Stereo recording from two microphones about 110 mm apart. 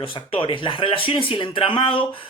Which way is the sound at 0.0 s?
55° left (ahead or behind).